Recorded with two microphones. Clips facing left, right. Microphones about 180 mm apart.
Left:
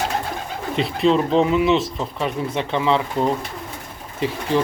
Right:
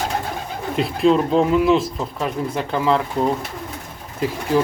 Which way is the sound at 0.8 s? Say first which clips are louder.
Right 1 dB; 5° right (ahead or behind).